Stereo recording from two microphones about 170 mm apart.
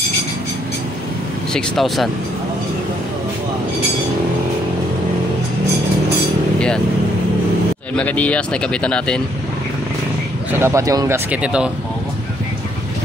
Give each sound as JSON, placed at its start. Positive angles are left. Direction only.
{"t": 1.5, "sound": "a man's voice", "side_deg": 0}
{"t": 7.9, "sound": "a man's voice", "side_deg": 10}
{"t": 10.6, "sound": "speech", "side_deg": -20}
{"t": 11.4, "sound": "a man's voice", "side_deg": -5}